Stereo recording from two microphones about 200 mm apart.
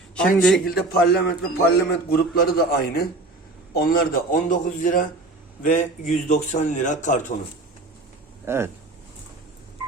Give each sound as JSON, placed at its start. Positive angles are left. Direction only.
{"t": 0.2, "sound": "a man's voice", "side_deg": 5}
{"t": 0.6, "sound": "a man's voice", "side_deg": 50}
{"t": 8.4, "sound": "speech", "side_deg": -15}